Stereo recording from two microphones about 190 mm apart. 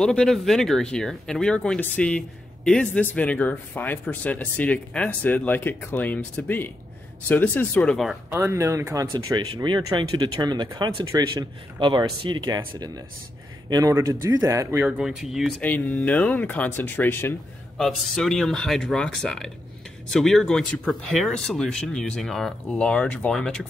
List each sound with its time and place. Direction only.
0.0 s speech: 5° left (ahead or behind)
8.3 s speech: 15° right (ahead or behind)
14.9 s speech: centre (ahead or behind)
17.7 s speech: centre (ahead or behind)